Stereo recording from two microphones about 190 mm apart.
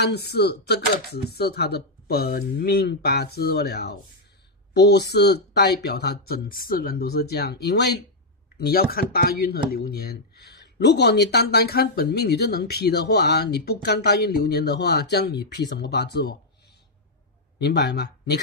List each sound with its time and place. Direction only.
0.0 s speech: 60° left (ahead or behind)
17.6 s speech: 60° left (ahead or behind)